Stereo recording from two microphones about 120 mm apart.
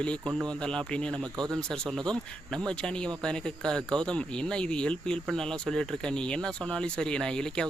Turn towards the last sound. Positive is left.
turn(degrees=5)  # may be behind; listen again after turning